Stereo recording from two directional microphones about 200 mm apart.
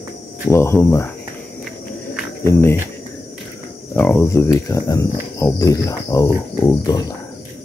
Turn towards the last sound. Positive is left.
turn(degrees=20)  # may be behind; listen again after turning